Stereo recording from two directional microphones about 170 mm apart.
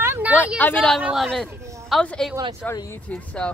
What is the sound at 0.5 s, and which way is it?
A woman's voice, 5° left (ahead or behind).